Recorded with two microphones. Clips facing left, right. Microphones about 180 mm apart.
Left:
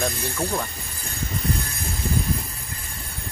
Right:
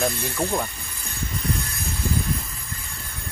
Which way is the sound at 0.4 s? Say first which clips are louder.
Right 2 dB; 15° right (ahead or behind).